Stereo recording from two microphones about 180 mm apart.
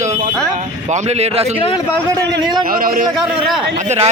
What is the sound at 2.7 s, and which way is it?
Speech, 55° right (ahead or behind).